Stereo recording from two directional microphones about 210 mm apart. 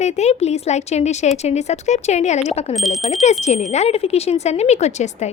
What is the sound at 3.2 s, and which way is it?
Speech, 30° left (ahead or behind).